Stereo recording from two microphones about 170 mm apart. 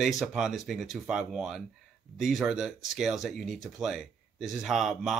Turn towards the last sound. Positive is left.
turn(degrees=0)  # may be behind; listen again after turning